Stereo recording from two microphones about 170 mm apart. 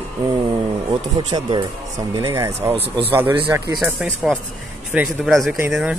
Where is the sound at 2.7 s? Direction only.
35° right (ahead or behind).